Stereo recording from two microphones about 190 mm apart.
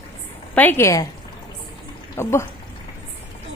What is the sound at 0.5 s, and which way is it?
Speech, 10° left (ahead or behind).